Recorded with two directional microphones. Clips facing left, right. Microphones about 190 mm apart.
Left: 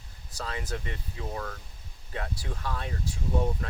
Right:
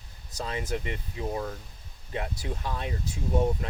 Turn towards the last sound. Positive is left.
turn(degrees=-20)  # may be behind; listen again after turning